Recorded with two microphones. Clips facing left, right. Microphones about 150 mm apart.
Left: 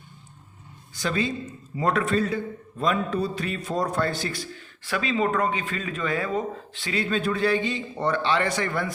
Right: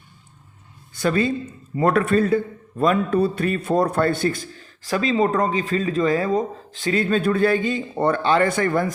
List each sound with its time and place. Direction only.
0.9 s a man's voice: 55° right (ahead or behind)